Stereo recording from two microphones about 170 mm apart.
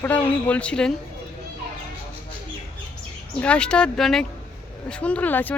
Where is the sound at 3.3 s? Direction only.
5° left (ahead or behind).